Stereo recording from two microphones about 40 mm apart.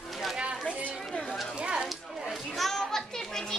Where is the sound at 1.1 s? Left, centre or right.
Centre.